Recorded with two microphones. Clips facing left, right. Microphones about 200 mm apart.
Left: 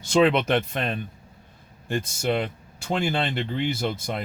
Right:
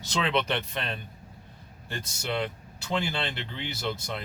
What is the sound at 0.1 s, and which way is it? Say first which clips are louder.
Speech: left 8 dB; 50° left (ahead or behind).